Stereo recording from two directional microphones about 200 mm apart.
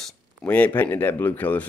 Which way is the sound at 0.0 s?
5° left (ahead or behind).